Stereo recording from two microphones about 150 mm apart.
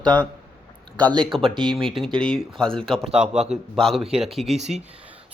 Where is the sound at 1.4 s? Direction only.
35° right (ahead or behind).